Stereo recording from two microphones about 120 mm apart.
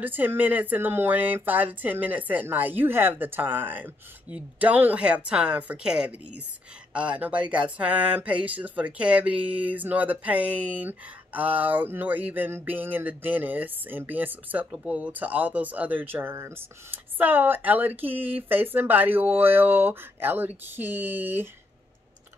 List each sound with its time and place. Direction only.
0.0 s speech: 15° right (ahead or behind)
18.1 s speech: 50° right (ahead or behind)
18.5 s speech: 15° right (ahead or behind)